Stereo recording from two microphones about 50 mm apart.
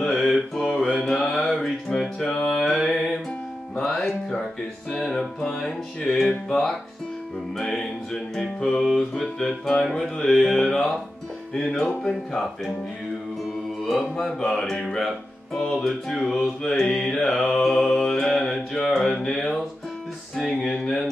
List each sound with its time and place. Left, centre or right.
0.0 s mantra: centre
0.9 s music: centre
7.6 s music: centre
9.5 s music: centre
11.5 s mantra: centre
13.8 s mantra: centre
19.2 s music: centre
20.7 s a sound: centre